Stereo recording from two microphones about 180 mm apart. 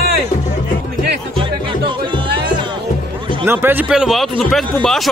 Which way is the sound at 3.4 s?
10° right (ahead or behind).